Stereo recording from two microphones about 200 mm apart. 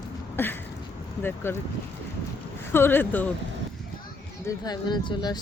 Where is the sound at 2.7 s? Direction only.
10° left (ahead or behind).